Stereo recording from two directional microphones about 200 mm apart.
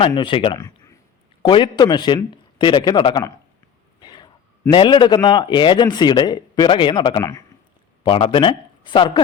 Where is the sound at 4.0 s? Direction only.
20° left (ahead or behind).